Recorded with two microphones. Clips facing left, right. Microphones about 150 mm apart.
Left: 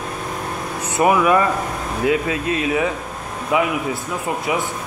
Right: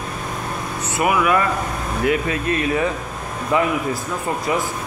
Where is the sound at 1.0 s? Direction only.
30° left (ahead or behind).